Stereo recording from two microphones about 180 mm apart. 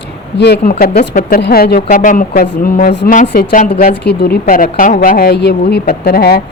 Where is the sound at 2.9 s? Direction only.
75° left (ahead or behind).